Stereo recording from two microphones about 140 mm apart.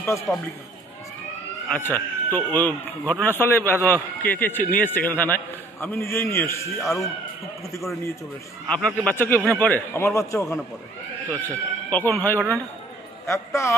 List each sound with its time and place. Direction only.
0.3 s speech: centre (ahead or behind)
1.7 s a man's voice: 15° left (ahead or behind)
8.6 s a man's voice: 10° left (ahead or behind)